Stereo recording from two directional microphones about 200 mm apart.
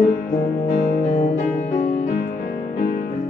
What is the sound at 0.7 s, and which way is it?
Music, 40° left (ahead or behind).